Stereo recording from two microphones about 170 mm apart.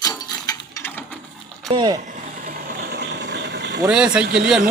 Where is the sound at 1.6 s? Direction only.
25° right (ahead or behind).